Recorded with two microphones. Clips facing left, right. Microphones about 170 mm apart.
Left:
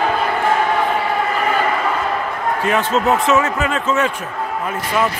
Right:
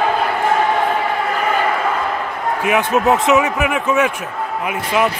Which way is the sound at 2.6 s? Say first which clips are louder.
Right 2 dB; 15° right (ahead or behind).